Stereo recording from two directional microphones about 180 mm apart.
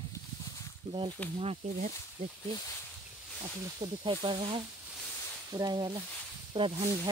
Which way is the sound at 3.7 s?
25° right (ahead or behind).